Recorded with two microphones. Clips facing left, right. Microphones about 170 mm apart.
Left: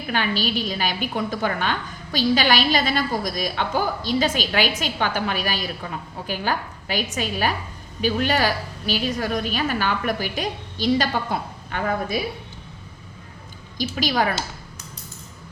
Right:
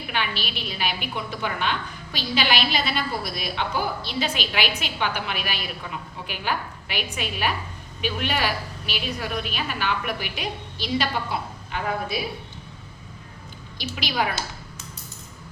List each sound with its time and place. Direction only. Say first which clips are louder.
0.1 s a woman's voice: left 7 dB; 40° left (ahead or behind)
13.7 s a woman's voice: left 5 dB; 40° left (ahead or behind)